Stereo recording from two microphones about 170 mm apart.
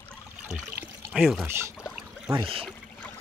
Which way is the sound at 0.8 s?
5° right (ahead or behind).